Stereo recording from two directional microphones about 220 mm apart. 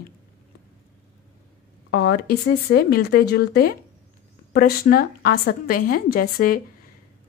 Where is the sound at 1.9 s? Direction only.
50° left (ahead or behind).